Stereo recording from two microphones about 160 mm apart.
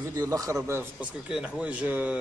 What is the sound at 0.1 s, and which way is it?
Speech, 25° right (ahead or behind).